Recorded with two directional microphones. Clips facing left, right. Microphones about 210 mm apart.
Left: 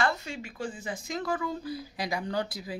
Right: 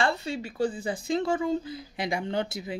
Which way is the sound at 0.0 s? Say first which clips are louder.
Right 3 dB; 30° right (ahead or behind).